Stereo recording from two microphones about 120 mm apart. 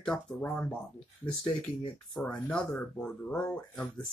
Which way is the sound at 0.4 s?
15° left (ahead or behind).